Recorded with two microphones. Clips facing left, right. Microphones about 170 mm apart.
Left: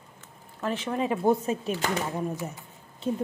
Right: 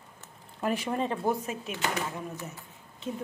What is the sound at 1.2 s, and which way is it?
Speech, 30° left (ahead or behind).